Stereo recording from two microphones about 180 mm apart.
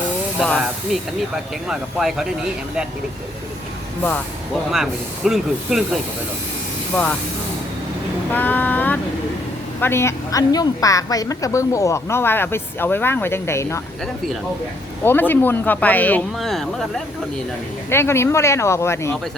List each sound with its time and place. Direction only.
0.3 s speech: 5° right (ahead or behind)
4.7 s speech: centre (ahead or behind)
6.9 s speech: 5° left (ahead or behind)
8.3 s a sound: 10° left (ahead or behind)
9.8 s a woman's voice: 15° left (ahead or behind)
15.0 s a woman's voice: 10° left (ahead or behind)
17.9 s a woman's voice: 15° left (ahead or behind)